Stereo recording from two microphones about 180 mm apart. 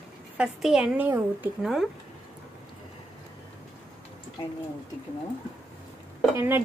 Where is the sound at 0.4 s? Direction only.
5° right (ahead or behind).